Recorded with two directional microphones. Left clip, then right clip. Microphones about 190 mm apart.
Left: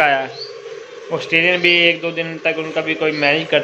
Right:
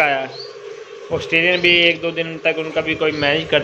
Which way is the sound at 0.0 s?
5° left (ahead or behind).